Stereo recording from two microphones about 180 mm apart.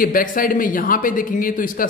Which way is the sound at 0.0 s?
50° left (ahead or behind).